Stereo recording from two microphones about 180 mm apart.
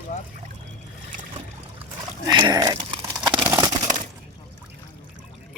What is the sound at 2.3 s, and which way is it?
Dog, 25° right (ahead or behind).